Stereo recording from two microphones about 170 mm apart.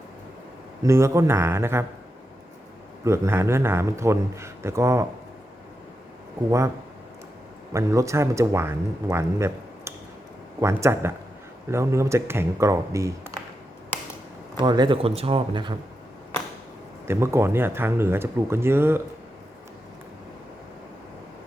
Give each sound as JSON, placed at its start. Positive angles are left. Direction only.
{"t": 0.8, "sound": "speech", "side_deg": -15}
{"t": 3.0, "sound": "speech", "side_deg": -15}
{"t": 7.7, "sound": "speech", "side_deg": -15}
{"t": 14.6, "sound": "speech", "side_deg": -25}
{"t": 17.1, "sound": "speech", "side_deg": -15}